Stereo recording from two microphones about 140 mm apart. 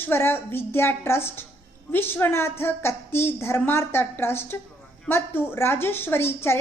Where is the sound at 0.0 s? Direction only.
15° left (ahead or behind).